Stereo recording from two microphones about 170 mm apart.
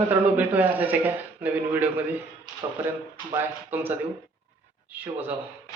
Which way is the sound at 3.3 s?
10° right (ahead or behind).